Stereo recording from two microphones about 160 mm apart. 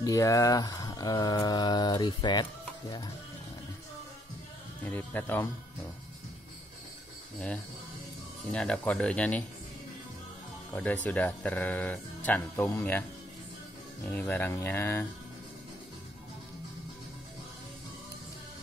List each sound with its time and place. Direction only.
0.0 s mantra: 20° left (ahead or behind)
4.8 s speech: 10° left (ahead or behind)
7.3 s speech: 10° left (ahead or behind)
10.7 s speech: 10° left (ahead or behind)
14.1 s speech: 10° left (ahead or behind)